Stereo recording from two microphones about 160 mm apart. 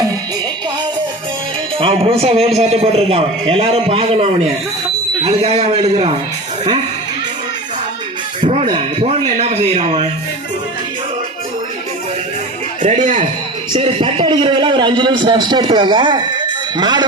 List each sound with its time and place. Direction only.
1.8 s a man's voice: 35° right (ahead or behind)
8.4 s speech: 40° right (ahead or behind)
12.8 s a man's voice: 50° right (ahead or behind)
13.7 s a man's voice: 30° right (ahead or behind)